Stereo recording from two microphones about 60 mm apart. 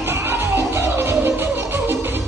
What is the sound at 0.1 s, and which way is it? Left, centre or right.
Music, right.